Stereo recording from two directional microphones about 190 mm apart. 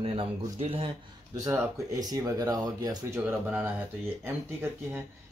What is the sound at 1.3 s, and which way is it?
Speech, 15° right (ahead or behind).